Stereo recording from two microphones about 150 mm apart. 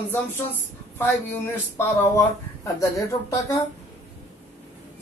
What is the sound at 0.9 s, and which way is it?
Speech, 15° left (ahead or behind).